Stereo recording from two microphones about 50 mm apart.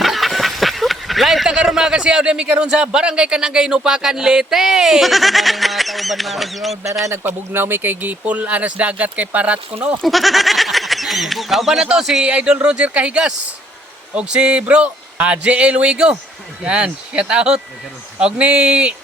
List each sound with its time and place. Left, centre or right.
0.0 s a sound: centre
1.5 s speech: centre
7.1 s speech: right
8.2 s speech: right
10.0 s speech: centre
12.2 s speech: right